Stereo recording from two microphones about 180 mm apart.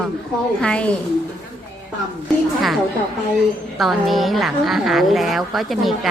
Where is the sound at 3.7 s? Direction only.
Centre (ahead or behind).